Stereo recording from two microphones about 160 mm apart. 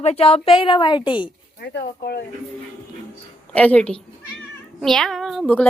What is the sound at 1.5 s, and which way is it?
Speech, 80° left.